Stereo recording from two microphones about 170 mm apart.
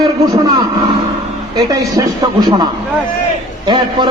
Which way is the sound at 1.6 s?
20° right (ahead or behind).